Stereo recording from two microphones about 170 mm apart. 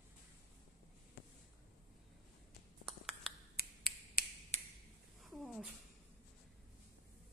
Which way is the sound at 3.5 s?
60° left (ahead or behind).